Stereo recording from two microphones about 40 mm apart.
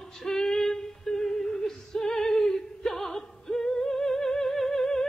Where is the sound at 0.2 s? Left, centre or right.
Centre.